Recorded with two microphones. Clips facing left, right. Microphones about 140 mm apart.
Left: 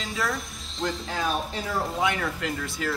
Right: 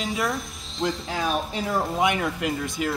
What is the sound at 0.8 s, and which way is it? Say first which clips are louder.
Speech: right 3 dB; centre (ahead or behind).